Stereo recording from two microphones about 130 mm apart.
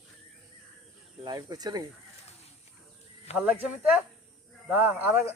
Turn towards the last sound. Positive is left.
turn(degrees=-15)  # may be behind; listen again after turning